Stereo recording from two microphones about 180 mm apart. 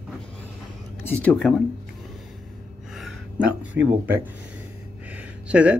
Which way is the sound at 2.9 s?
Centre (ahead or behind).